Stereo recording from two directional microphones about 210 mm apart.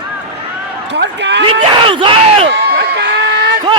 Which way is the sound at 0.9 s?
55° right (ahead or behind).